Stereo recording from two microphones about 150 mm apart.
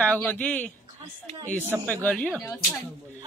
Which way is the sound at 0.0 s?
10° left (ahead or behind).